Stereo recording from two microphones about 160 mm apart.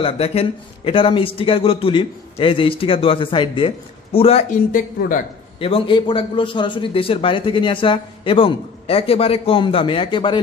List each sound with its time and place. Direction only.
0.0 s a man's voice: 35° left (ahead or behind)
4.5 s speech: 55° left (ahead or behind)
5.6 s a man's voice: 35° left (ahead or behind)